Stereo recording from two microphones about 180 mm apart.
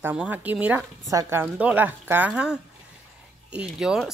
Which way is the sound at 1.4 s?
10° right (ahead or behind).